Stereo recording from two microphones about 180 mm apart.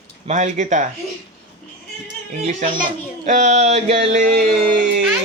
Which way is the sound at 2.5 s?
40° right (ahead or behind).